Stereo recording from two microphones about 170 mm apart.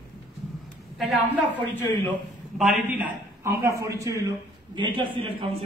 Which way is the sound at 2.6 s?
5° right (ahead or behind).